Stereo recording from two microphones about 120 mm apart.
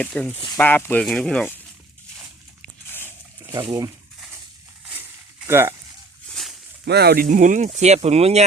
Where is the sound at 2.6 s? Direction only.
15° left (ahead or behind).